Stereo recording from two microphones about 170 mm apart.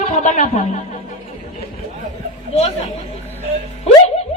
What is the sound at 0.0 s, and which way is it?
Music, 45° left (ahead or behind).